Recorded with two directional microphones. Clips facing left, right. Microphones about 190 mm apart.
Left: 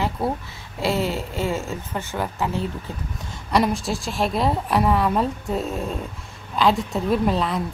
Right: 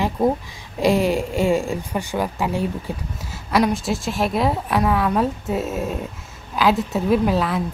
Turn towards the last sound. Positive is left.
turn(degrees=0)  # may be behind; listen again after turning